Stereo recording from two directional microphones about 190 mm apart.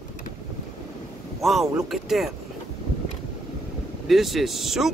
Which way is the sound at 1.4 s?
Centre (ahead or behind).